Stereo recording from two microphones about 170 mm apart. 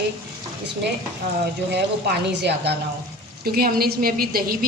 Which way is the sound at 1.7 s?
75° right (ahead or behind).